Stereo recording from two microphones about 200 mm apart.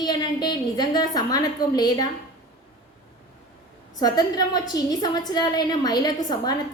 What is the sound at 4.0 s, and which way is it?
A woman's voice, 20° left (ahead or behind).